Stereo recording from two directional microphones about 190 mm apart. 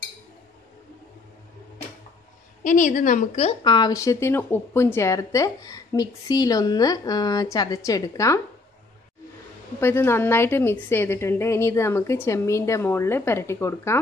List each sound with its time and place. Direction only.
2.6 s a woman's voice: 40° left (ahead or behind); by 8.4 s 15° left (ahead or behind)
9.8 s a woman's voice: 15° left (ahead or behind)